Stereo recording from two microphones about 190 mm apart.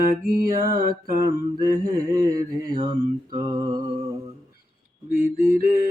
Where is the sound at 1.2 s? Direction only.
20° right (ahead or behind).